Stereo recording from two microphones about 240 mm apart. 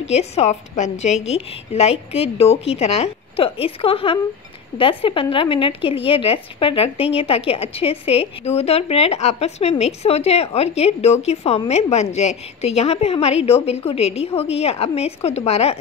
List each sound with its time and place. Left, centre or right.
0.0 s a woman's voice: left